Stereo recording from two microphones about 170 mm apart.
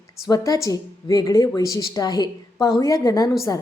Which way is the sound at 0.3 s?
20° left (ahead or behind).